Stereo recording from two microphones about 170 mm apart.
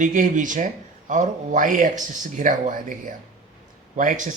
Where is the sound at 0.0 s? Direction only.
50° right (ahead or behind).